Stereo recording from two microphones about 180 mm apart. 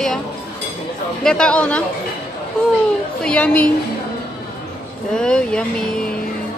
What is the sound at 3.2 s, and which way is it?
Speech, 5° left (ahead or behind).